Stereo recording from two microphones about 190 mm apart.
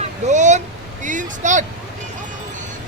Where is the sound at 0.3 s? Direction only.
40° right (ahead or behind).